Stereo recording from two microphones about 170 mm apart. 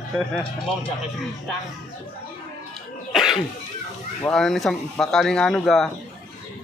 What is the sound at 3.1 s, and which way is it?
Cough, centre (ahead or behind).